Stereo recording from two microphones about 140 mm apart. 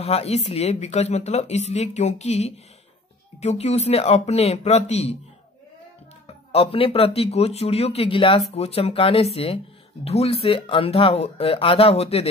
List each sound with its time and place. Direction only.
0.0 s speech: 45° left (ahead or behind)
6.2 s speech: 45° left (ahead or behind)